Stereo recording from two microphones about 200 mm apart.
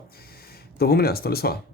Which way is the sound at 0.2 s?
50° left (ahead or behind).